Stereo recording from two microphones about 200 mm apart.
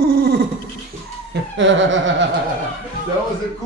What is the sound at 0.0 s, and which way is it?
Dog, 50° right (ahead or behind).